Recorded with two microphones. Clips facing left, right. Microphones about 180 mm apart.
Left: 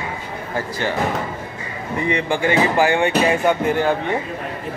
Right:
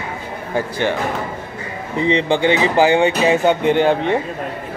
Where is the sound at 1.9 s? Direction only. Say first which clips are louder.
Right 4 dB; 20° right (ahead or behind).